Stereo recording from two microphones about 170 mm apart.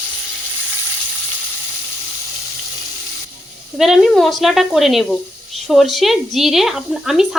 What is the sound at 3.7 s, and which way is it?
Speech, centre (ahead or behind).